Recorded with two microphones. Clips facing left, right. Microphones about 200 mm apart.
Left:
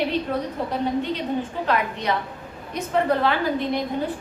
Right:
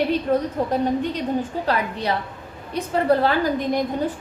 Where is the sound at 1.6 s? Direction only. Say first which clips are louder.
Right 1 dB; 35° right (ahead or behind).